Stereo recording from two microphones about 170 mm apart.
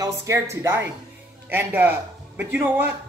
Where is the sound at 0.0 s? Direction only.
15° right (ahead or behind).